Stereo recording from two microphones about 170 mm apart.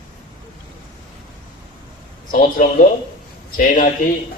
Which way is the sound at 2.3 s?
55° left (ahead or behind).